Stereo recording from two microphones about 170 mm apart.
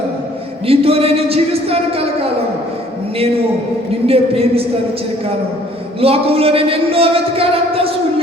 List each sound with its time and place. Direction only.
0.7 s a man's voice: 35° right (ahead or behind)
4.0 s a man's voice: 35° right (ahead or behind)
6.0 s a man's voice: 35° right (ahead or behind)